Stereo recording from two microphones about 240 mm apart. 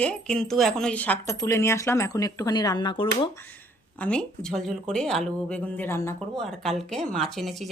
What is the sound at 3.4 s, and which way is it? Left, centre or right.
Speech, centre.